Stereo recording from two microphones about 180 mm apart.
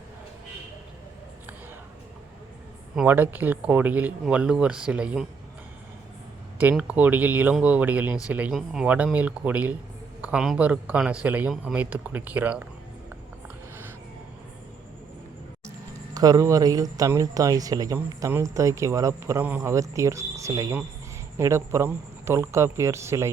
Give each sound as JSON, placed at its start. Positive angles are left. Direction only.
{"t": 2.9, "sound": "speech", "side_deg": -5}
{"t": 6.6, "sound": "speech", "side_deg": -10}
{"t": 16.1, "sound": "speech", "side_deg": -20}